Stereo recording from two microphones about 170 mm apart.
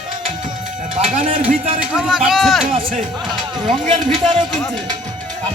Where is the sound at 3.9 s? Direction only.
30° right (ahead or behind).